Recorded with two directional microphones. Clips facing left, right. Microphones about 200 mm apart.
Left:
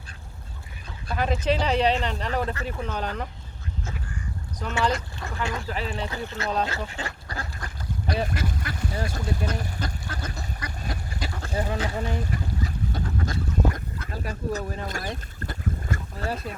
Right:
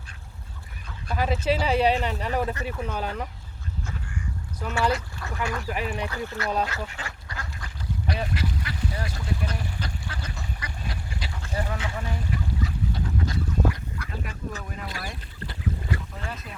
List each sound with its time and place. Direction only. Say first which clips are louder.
1.1 s speech: even; 5° right (ahead or behind)
4.8 s speech: even; 5° right (ahead or behind)
5.4 s speech: even; 25° left (ahead or behind)
5.6 s speech: right 1 dB; 10° right (ahead or behind)
6.1 s speech: even; 20° left (ahead or behind)
6.7 s duck: left 3 dB; 30° left (ahead or behind); by 13.3 s 45° left (ahead or behind)
14.1 s speech: left 7 dB; 40° left (ahead or behind)
15.4 s boat: even; 45° left (ahead or behind)